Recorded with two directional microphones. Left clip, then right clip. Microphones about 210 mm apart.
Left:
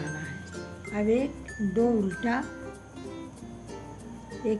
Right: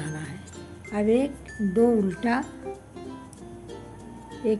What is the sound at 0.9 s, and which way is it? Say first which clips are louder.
Speech: right 3 dB; 30° right (ahead or behind).